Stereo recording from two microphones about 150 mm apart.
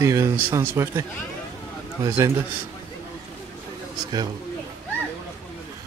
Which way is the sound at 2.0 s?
20° right (ahead or behind).